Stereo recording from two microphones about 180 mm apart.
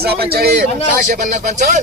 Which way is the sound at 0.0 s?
60° right (ahead or behind).